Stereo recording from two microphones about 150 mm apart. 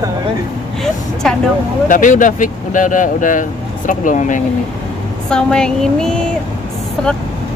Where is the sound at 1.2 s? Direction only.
5° left (ahead or behind).